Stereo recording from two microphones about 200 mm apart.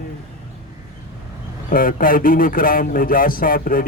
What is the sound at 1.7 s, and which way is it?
Speech, 45° left (ahead or behind).